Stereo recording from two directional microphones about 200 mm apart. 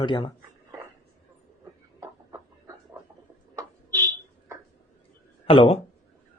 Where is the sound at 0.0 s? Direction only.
20° left (ahead or behind).